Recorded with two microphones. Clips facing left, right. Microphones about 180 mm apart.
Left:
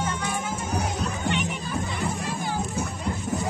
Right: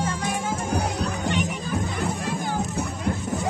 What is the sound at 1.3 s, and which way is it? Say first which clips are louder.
Music: right 1 dB; 40° right (ahead or behind).